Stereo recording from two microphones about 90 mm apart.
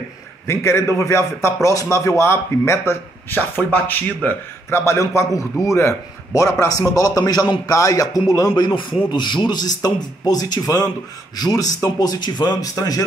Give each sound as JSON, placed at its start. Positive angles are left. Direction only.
{"t": 0.5, "sound": "a man's voice", "side_deg": 30}